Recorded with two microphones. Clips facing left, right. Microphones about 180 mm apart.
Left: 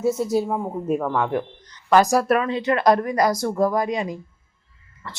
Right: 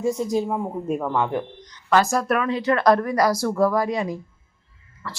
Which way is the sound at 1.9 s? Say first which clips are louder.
Left 3 dB; 15° left (ahead or behind).